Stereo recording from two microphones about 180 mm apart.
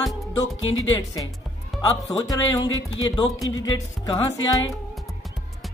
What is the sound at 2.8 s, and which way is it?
Speech, 90° left.